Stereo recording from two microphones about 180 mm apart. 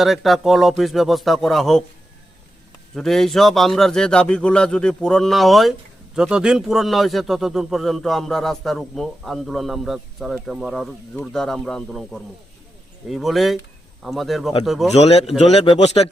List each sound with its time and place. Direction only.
0.0 s a man's voice: centre (ahead or behind)
2.9 s a man's voice: centre (ahead or behind)
14.9 s speech: 35° left (ahead or behind)